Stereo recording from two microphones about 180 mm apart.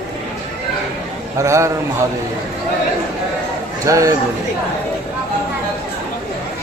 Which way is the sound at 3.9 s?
20° right (ahead or behind).